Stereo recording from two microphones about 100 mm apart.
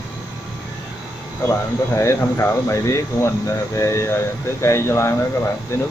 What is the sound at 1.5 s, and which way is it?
Speech, 30° left (ahead or behind).